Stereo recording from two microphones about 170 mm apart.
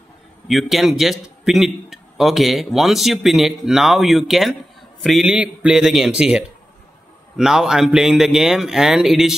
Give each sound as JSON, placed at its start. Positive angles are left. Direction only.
{"t": 0.5, "sound": "a man's voice", "side_deg": 0}